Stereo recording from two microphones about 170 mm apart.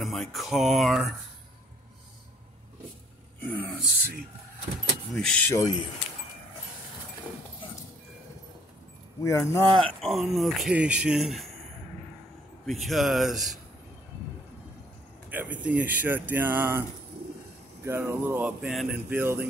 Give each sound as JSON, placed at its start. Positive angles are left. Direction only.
{"t": 0.0, "sound": "speech", "side_deg": 0}
{"t": 3.4, "sound": "speech", "side_deg": 10}
{"t": 5.1, "sound": "speech", "side_deg": 0}
{"t": 5.5, "sound": "speech", "side_deg": 15}
{"t": 9.2, "sound": "speech", "side_deg": 20}
{"t": 9.8, "sound": "speech", "side_deg": 0}
{"t": 12.6, "sound": "speech", "side_deg": 0}
{"t": 15.2, "sound": "speech", "side_deg": -10}
{"t": 17.8, "sound": "speech", "side_deg": -15}
{"t": 18.4, "sound": "speech", "side_deg": 0}